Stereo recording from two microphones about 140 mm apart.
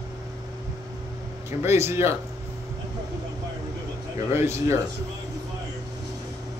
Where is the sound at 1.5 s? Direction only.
20° right (ahead or behind).